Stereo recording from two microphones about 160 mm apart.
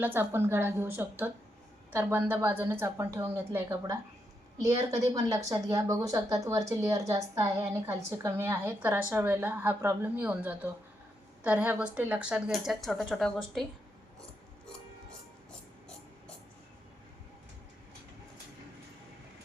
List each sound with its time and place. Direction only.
0.0 s a woman's voice: 15° right (ahead or behind)